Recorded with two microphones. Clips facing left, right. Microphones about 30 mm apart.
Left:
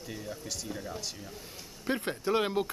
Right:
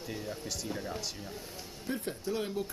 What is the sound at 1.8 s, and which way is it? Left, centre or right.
Speech, left.